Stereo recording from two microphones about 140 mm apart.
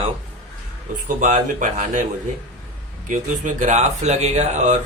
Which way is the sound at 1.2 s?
65° right (ahead or behind).